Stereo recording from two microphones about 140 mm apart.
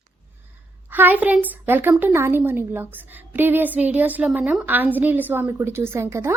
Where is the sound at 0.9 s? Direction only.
10° right (ahead or behind).